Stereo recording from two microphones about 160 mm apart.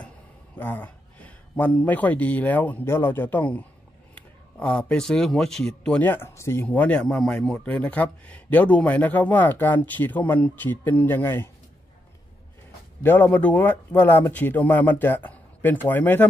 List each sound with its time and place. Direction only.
0.6 s speech: 10° left (ahead or behind)
13.0 s speech: 10° left (ahead or behind)